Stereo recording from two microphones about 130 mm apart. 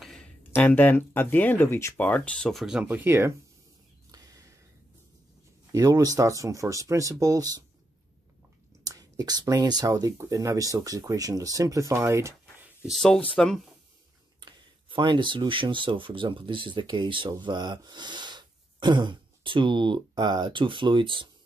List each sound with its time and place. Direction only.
0.0 s a sound: 5° left (ahead or behind)
0.4 s speech: 15° left (ahead or behind); by 3.3 s 15° right (ahead or behind)
4.1 s a sound: 25° right (ahead or behind)
5.7 s speech: 25° right (ahead or behind)
8.8 s speech: 25° right (ahead or behind)
12.8 s speech: centre (ahead or behind)
14.4 s speech: 35° right (ahead or behind)